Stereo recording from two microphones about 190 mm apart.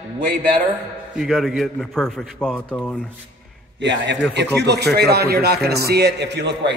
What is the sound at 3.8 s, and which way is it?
A man's voice, 70° right (ahead or behind).